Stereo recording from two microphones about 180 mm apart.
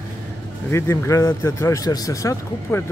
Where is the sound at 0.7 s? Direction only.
15° left (ahead or behind).